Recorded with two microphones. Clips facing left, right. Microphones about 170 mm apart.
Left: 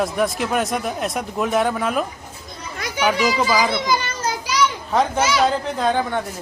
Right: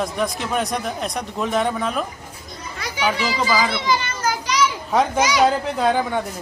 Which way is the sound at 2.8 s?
45° left (ahead or behind).